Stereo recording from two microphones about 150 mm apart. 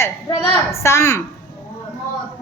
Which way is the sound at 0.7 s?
15° left (ahead or behind).